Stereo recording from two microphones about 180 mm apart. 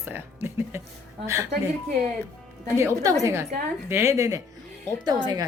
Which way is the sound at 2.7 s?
15° right (ahead or behind).